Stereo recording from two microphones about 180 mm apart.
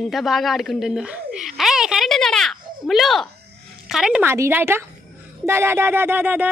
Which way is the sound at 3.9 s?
5° right (ahead or behind).